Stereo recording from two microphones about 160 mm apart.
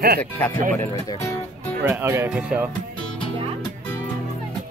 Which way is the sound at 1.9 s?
15° right (ahead or behind).